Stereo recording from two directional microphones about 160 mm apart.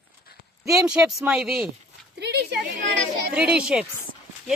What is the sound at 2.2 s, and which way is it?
Speech, 90° right.